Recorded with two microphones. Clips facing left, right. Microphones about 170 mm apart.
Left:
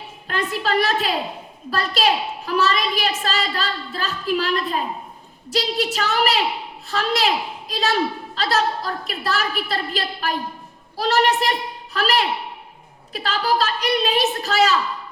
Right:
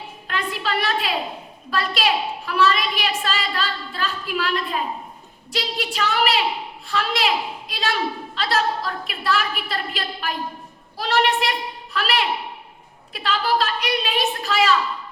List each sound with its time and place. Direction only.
0.3 s a woman's voice: 40° left (ahead or behind)